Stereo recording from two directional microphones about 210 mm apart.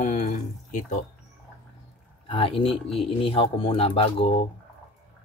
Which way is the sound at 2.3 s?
25° left (ahead or behind).